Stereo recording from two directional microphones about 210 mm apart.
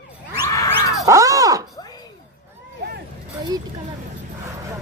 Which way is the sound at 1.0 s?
15° right (ahead or behind).